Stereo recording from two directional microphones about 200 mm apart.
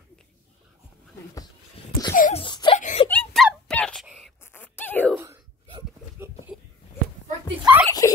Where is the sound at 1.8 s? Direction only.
30° left (ahead or behind).